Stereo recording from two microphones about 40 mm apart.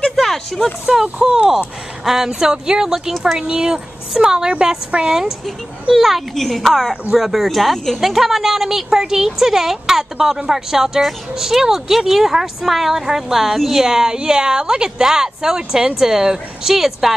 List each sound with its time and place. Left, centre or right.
0.1 s a sound: centre
0.9 s a woman's voice: right; by 6.2 s centre
6.3 s speech: centre
6.7 s speech: centre
8.0 s a woman's voice: centre